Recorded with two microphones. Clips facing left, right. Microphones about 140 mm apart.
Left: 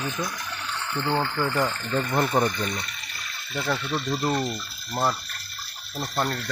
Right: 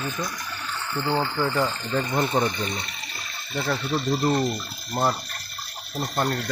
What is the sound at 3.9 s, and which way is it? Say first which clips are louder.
Speech: right 5 dB; 40° right (ahead or behind).